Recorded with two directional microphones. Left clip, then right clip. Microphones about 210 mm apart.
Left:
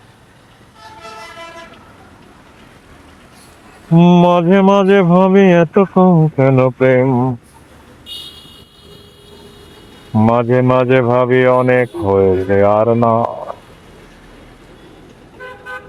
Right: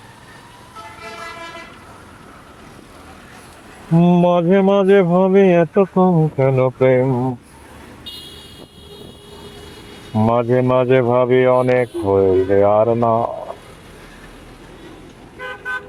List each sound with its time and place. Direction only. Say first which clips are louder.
3.9 s speech: left 4 dB; 40° left (ahead or behind)
10.2 s speech: left 3 dB; 35° left (ahead or behind)